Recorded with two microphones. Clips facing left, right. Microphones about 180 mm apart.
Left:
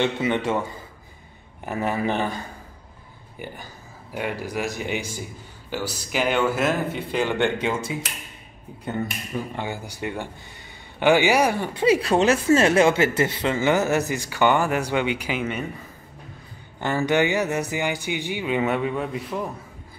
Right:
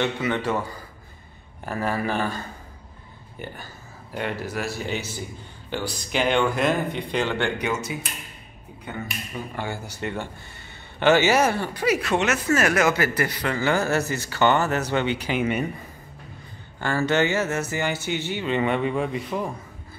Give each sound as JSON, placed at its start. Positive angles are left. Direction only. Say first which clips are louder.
{"t": 0.0, "sound": "speech", "louder": "left 2 dB", "side_deg": 20}
{"t": 1.7, "sound": "speech", "louder": "left 1 dB", "side_deg": 20}
{"t": 4.1, "sound": "speech", "louder": "left 1 dB", "side_deg": 10}
{"t": 7.3, "sound": "speech", "louder": "left 2 dB", "side_deg": 25}
{"t": 9.6, "sound": "speech", "louder": "left 1 dB", "side_deg": 15}
{"t": 11.7, "sound": "speech", "louder": "left 4 dB", "side_deg": 30}
{"t": 16.8, "sound": "speech", "louder": "left 1 dB", "side_deg": 15}